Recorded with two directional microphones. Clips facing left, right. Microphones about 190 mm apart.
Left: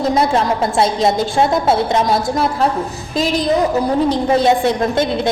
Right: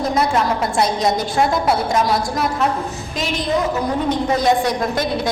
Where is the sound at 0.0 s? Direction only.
25° left (ahead or behind).